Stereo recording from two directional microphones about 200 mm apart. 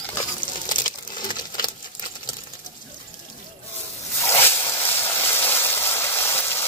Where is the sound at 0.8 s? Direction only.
20° left (ahead or behind).